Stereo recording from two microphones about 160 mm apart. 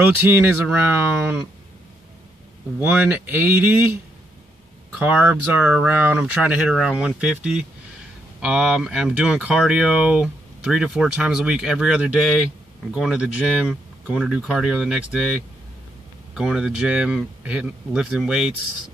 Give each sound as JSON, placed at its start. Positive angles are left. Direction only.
{"t": 0.0, "sound": "speech", "side_deg": -10}
{"t": 2.8, "sound": "speech", "side_deg": -10}
{"t": 4.9, "sound": "speech", "side_deg": -10}
{"t": 16.3, "sound": "speech", "side_deg": -5}